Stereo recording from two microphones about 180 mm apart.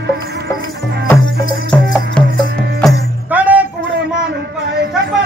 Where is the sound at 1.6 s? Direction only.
5° left (ahead or behind).